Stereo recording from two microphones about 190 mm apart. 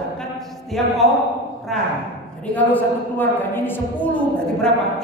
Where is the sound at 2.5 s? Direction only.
10° left (ahead or behind).